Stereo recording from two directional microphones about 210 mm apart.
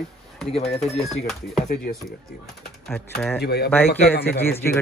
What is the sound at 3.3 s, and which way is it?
Speech, 50° left (ahead or behind).